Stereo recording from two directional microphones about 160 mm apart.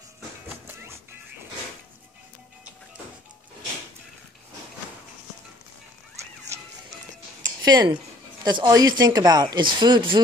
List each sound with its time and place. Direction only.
7.6 s speech: 25° right (ahead or behind)